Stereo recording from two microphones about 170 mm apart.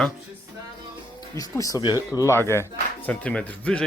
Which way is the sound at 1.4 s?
20° left (ahead or behind).